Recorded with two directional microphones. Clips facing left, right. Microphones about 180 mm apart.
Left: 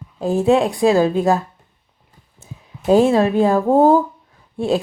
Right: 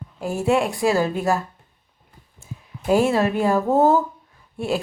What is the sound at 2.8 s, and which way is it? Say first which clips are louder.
Speech: left 5 dB; 20° left (ahead or behind).